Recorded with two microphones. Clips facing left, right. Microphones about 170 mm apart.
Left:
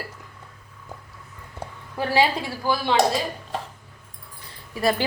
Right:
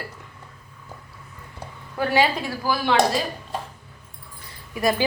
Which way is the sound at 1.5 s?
30° left (ahead or behind).